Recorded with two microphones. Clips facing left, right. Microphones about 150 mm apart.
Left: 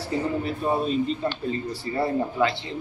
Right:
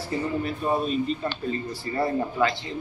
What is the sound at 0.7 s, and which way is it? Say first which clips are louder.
Speech: left 1 dB; 25° left (ahead or behind).